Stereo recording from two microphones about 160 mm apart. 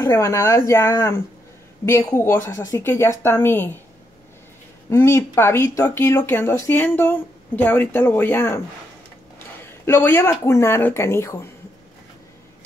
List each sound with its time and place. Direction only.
0.0 s speech: 15° left (ahead or behind)
4.8 s speech: 15° left (ahead or behind)
9.8 s speech: 15° left (ahead or behind)